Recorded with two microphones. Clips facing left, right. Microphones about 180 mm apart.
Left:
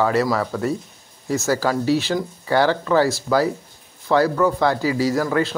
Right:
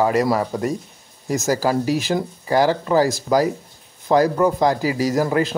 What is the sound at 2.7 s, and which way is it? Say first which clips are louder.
Speech: even; 30° right (ahead or behind).